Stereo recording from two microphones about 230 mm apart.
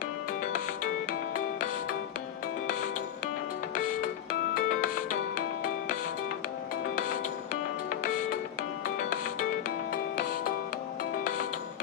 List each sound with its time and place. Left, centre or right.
2.6 s music: left
4.6 s music: left
7.9 s music: left